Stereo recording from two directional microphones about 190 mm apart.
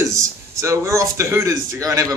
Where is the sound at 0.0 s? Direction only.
15° right (ahead or behind).